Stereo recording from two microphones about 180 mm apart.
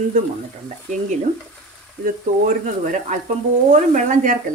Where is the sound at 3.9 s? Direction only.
45° right (ahead or behind).